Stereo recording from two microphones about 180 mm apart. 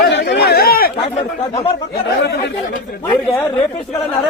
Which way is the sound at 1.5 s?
30° left (ahead or behind).